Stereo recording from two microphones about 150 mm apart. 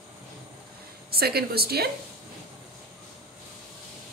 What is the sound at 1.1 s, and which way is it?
Speech, 90° right.